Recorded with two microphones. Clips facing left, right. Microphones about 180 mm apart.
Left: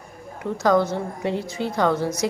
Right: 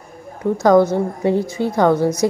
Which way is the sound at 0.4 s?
40° right (ahead or behind).